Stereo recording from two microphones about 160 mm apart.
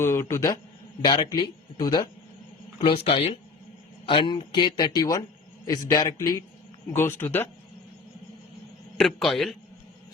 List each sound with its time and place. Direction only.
0.0 s a man's voice: 15° left (ahead or behind)
1.0 s a man's voice: 25° left (ahead or behind)
9.0 s a man's voice: 5° left (ahead or behind)